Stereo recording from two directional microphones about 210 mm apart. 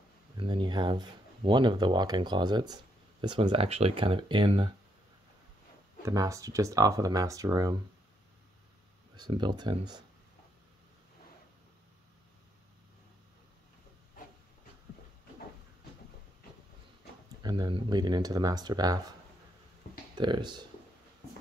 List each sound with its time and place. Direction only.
0.4 s speech: 20° right (ahead or behind)
6.0 s speech: 15° right (ahead or behind)
9.1 s speech: 20° right (ahead or behind)
17.4 s speech: 20° right (ahead or behind)
20.2 s speech: 20° right (ahead or behind)